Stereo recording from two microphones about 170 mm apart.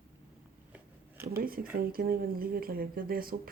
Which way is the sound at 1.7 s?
60° right (ahead or behind).